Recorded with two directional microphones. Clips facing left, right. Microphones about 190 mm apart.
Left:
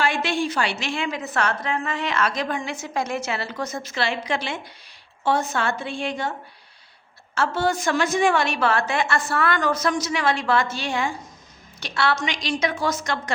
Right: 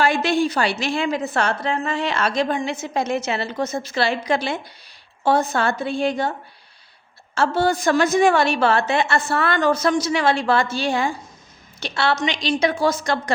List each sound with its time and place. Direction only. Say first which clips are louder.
0.0 s a woman's voice: right 5 dB; 40° right (ahead or behind)
7.3 s a woman's voice: right 3 dB; 30° right (ahead or behind)